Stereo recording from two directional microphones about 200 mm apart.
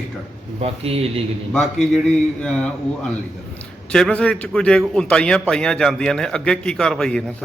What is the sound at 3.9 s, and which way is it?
A man's voice, 5° left (ahead or behind).